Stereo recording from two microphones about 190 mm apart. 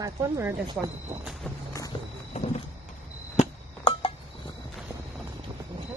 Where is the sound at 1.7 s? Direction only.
15° left (ahead or behind).